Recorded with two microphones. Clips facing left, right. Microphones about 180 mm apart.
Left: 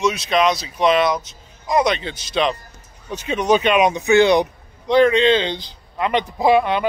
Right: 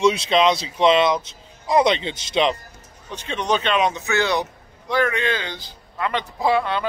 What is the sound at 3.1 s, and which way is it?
A man's voice, 10° left (ahead or behind).